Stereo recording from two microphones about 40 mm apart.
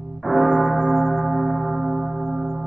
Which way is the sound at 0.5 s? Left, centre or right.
Right.